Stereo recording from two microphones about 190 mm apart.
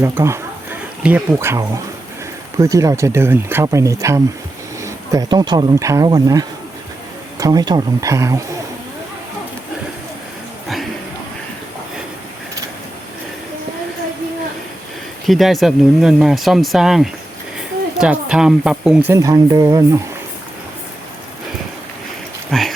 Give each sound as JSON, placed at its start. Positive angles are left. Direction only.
{"t": 0.0, "sound": "speech", "side_deg": -15}
{"t": 15.3, "sound": "speech", "side_deg": 0}
{"t": 22.5, "sound": "speech", "side_deg": 0}